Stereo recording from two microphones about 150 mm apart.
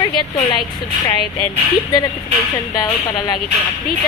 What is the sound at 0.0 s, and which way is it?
Speech, 30° left (ahead or behind).